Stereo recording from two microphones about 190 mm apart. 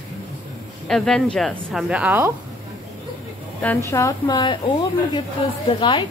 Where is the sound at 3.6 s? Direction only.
5° left (ahead or behind).